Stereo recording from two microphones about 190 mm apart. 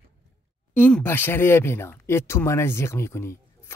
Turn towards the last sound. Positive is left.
turn(degrees=15)  # may be behind; listen again after turning